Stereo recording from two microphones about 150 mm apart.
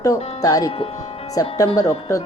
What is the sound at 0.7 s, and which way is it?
Speech, 40° left (ahead or behind).